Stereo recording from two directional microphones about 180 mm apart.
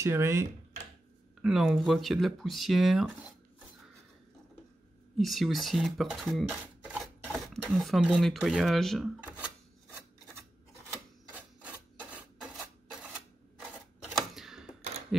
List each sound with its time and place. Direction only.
0.0 s speech: 15° right (ahead or behind)
1.4 s speech: centre (ahead or behind)
5.1 s speech: centre (ahead or behind)
11.3 s filing: 10° right (ahead or behind)
13.6 s typewriter: centre (ahead or behind)